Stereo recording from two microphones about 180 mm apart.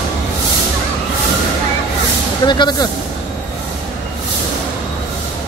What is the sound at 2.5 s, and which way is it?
Speech, 25° left (ahead or behind).